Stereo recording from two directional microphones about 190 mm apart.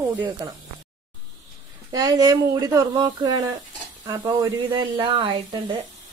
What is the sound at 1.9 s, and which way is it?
A woman's voice, 20° right (ahead or behind).